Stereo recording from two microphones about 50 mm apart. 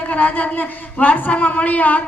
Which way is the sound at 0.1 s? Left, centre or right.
Left.